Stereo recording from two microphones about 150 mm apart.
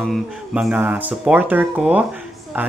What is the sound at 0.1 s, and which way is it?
Speech, 5° right (ahead or behind).